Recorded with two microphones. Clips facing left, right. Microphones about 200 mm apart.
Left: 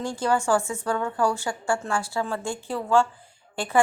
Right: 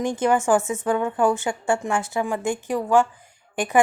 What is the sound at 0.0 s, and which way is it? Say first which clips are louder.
A woman's voice: right 4 dB; 20° right (ahead or behind).